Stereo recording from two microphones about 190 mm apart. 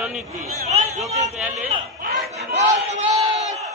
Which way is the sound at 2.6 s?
35° right (ahead or behind).